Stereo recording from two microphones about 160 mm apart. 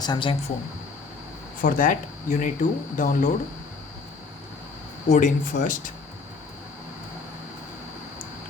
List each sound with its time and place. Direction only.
0.0 s speech: 30° left (ahead or behind)
1.6 s speech: 60° left (ahead or behind)
5.0 s speech: 50° left (ahead or behind)